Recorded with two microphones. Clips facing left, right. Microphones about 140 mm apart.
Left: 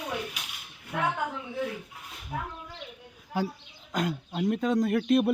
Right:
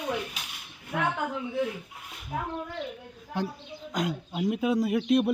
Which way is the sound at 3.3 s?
65° right (ahead or behind).